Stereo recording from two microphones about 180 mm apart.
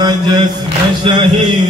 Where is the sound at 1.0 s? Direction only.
25° right (ahead or behind).